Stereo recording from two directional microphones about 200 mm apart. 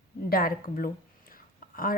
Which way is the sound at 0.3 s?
45° left (ahead or behind).